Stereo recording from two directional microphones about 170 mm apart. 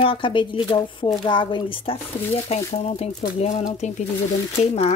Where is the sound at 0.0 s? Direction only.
30° left (ahead or behind).